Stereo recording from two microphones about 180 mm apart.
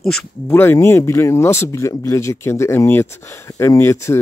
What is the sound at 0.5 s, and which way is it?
Speech, 15° left (ahead or behind).